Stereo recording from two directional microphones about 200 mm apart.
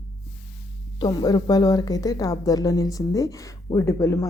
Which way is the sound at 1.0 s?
20° left (ahead or behind).